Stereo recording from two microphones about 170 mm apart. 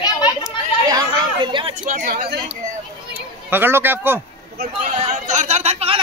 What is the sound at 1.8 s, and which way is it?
Speech, 50° right (ahead or behind).